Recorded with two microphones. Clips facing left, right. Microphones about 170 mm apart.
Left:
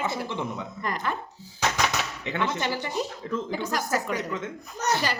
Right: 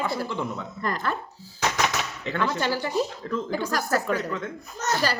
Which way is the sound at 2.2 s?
20° left (ahead or behind).